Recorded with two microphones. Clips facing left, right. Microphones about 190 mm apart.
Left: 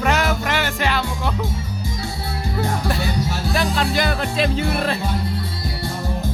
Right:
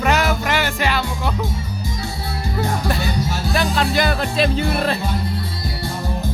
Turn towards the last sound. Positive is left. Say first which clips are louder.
# right 1 dB
turn(degrees=-35)  # may be behind; listen again after turning